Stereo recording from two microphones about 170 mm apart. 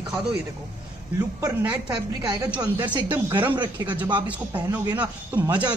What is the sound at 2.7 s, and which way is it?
Speech, 25° right (ahead or behind).